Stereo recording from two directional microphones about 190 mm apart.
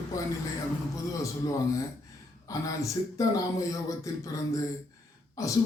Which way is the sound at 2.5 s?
20° left (ahead or behind).